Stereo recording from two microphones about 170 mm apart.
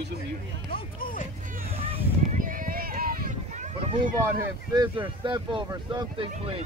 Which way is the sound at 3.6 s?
35° right (ahead or behind).